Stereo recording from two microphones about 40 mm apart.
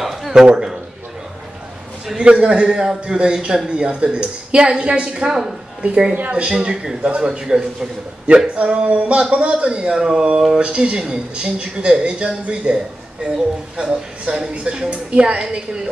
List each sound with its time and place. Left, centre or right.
0.0 s a sound: centre
0.5 s a woman's voice: centre
2.1 s a woman's voice: right
5.3 s a woman's voice: centre
5.8 s speech: right
6.5 s a woman's voice: centre
7.0 s a man's voice: right
7.2 s a woman's voice: centre
8.5 s a woman's voice: right
10.6 s a woman's voice: right
15.3 s a woman's voice: centre